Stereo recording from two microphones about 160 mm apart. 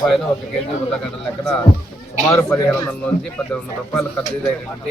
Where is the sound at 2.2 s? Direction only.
20° left (ahead or behind).